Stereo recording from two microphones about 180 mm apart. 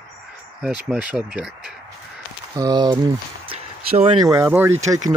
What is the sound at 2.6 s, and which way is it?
Speech, 25° right (ahead or behind).